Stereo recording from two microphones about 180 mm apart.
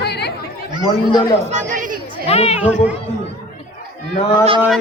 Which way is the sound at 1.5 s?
40° right (ahead or behind).